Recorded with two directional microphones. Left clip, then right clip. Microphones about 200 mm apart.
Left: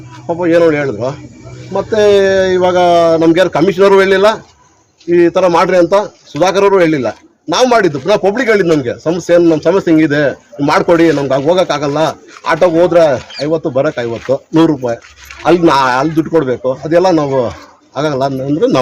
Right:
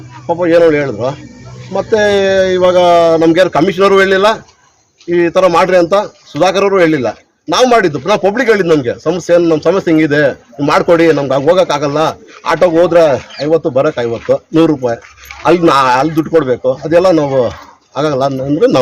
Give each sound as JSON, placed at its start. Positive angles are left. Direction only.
{"t": 0.3, "sound": "a man's voice", "side_deg": -15}